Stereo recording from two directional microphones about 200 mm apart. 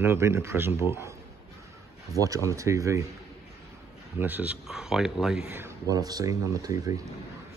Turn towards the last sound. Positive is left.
turn(degrees=-15)  # may be behind; listen again after turning